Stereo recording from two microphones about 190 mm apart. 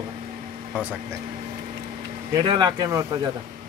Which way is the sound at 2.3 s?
20° right (ahead or behind).